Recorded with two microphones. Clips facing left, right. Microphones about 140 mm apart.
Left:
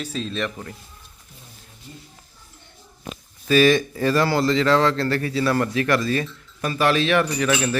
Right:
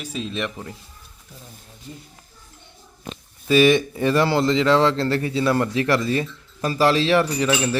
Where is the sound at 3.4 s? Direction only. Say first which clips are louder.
Right 1 dB; 20° right (ahead or behind).